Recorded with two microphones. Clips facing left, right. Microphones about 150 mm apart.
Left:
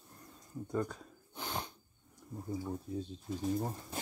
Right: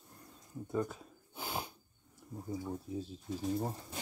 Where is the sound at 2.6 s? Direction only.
5° right (ahead or behind).